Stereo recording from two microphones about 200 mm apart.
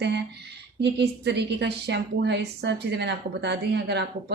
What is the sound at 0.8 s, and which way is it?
A woman's voice, 60° right (ahead or behind).